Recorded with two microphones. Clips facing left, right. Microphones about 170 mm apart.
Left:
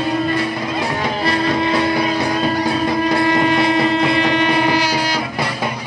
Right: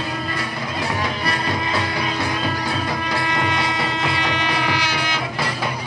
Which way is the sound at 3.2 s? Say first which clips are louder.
Left 8 dB; 35° left (ahead or behind).